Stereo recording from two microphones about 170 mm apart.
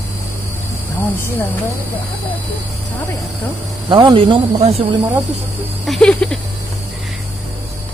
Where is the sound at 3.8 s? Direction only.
30° right (ahead or behind).